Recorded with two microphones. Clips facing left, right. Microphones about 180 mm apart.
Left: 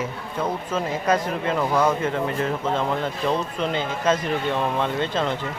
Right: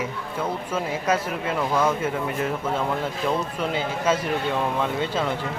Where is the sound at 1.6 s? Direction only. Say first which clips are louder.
Left 1 dB; 10° left (ahead or behind).